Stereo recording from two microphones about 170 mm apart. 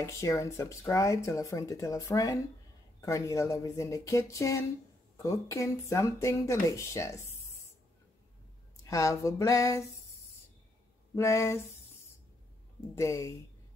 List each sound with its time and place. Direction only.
0.0 s speech: 20° left (ahead or behind)
8.8 s speech: 20° left (ahead or behind)
11.1 s speech: 15° left (ahead or behind)
12.9 s speech: 15° left (ahead or behind)